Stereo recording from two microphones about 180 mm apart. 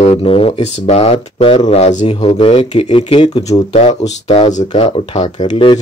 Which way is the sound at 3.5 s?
35° left (ahead or behind).